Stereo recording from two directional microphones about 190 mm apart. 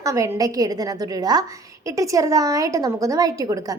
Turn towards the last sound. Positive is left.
turn(degrees=-20)  # may be behind; listen again after turning